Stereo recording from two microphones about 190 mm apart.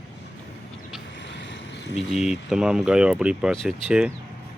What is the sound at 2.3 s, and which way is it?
Speech, 5° right (ahead or behind).